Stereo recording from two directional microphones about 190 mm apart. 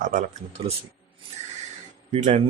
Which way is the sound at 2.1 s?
40° right (ahead or behind).